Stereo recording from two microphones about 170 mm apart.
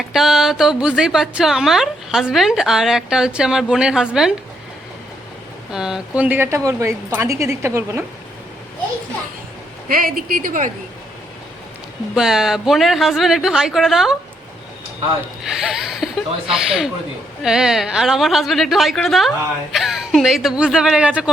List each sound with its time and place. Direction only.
0.0 s a woman's voice: centre (ahead or behind)
5.7 s speech: 5° right (ahead or behind)
9.9 s a woman's voice: 55° right (ahead or behind)
12.1 s a woman's voice: 5° right (ahead or behind)
15.4 s a woman's voice: 5° right (ahead or behind)